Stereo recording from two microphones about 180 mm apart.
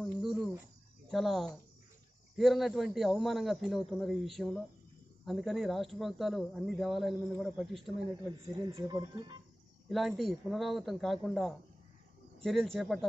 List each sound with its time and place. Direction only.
0.0 s cricket: centre (ahead or behind)
1.1 s speech: centre (ahead or behind)
8.5 s speech: 20° right (ahead or behind)
9.8 s speech: centre (ahead or behind)